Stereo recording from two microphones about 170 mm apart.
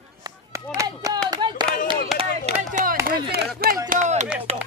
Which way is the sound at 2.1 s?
40° right (ahead or behind).